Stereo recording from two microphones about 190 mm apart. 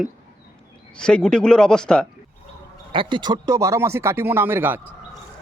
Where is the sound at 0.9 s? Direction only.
5° left (ahead or behind).